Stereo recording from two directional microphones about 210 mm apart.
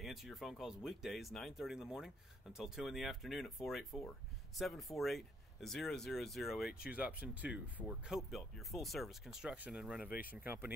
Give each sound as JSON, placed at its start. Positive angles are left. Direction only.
{"t": 0.0, "sound": "speech", "side_deg": 0}
{"t": 10.0, "sound": "speech", "side_deg": 45}
{"t": 10.3, "sound": "speech", "side_deg": -10}